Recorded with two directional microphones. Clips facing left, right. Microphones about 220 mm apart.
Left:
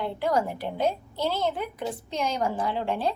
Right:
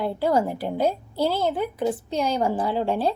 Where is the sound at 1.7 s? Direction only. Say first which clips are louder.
Right 7 dB; 35° right (ahead or behind).